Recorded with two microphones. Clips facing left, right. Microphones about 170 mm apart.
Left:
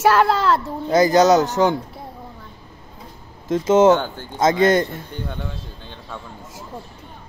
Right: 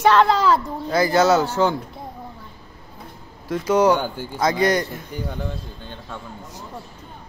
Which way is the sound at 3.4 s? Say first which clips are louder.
Left 4 dB; 25° left (ahead or behind).